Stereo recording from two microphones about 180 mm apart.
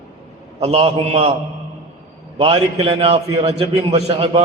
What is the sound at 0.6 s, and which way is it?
Speech, 35° right (ahead or behind).